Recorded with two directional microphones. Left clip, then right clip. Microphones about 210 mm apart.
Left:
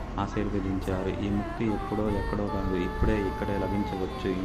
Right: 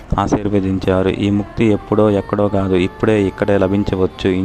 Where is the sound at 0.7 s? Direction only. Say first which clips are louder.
Right 15 dB; 45° right (ahead or behind).